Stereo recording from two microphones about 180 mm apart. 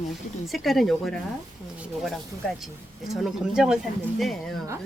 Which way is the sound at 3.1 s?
Centre (ahead or behind).